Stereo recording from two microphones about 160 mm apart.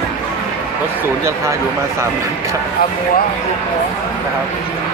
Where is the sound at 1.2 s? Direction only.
15° right (ahead or behind).